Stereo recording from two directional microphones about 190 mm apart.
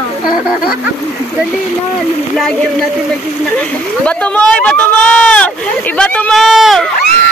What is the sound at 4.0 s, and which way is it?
Speech, 5° left (ahead or behind).